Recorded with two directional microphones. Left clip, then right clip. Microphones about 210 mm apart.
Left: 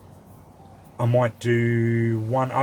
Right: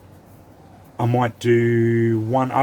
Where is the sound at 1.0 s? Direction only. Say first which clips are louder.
Right 1 dB; 35° right (ahead or behind).